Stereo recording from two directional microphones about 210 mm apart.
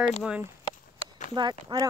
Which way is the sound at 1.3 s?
20° right (ahead or behind).